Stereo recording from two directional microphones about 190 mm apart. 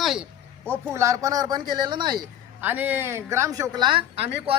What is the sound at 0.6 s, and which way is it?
Speech, 15° right (ahead or behind).